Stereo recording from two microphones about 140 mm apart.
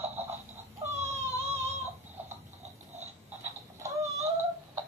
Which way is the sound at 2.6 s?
50° right (ahead or behind).